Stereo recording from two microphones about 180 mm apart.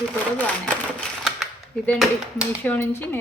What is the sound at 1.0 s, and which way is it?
Typewriter, centre (ahead or behind).